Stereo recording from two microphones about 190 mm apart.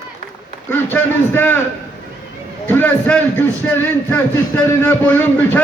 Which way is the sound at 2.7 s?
10° left (ahead or behind).